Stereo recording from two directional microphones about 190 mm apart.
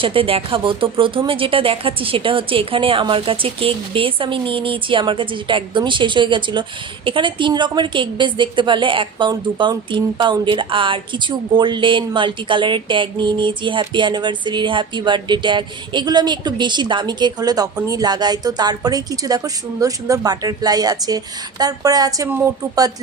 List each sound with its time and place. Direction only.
0.0 s speech: 30° right (ahead or behind)